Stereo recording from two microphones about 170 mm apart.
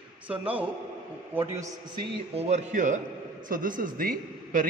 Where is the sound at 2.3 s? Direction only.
40° right (ahead or behind).